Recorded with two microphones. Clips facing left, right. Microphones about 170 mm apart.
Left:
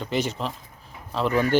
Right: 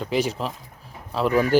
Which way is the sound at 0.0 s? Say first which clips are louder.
Right 2 dB; 5° right (ahead or behind).